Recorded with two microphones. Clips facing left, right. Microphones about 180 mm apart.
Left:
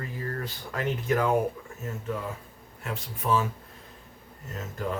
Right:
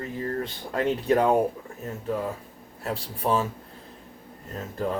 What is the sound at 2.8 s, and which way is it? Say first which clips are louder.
Speech: right 3 dB; 35° right (ahead or behind).